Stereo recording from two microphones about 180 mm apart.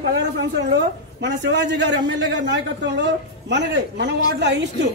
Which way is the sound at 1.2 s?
70° right (ahead or behind).